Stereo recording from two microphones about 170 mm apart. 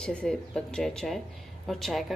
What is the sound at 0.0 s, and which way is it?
A woman's voice, 5° left (ahead or behind).